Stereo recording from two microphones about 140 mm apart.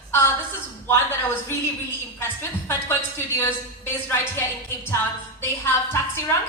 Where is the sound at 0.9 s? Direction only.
15° left (ahead or behind).